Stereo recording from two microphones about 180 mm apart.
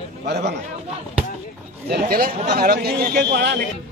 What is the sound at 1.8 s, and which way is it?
A man's voice, 55° right (ahead or behind).